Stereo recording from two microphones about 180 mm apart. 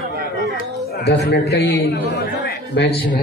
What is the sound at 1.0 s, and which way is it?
A man's voice, 70° left (ahead or behind).